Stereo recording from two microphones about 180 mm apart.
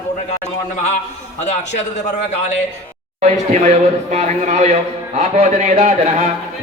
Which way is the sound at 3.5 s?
40° right (ahead or behind).